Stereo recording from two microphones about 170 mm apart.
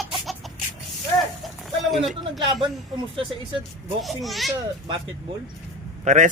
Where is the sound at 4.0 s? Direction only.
Centre (ahead or behind).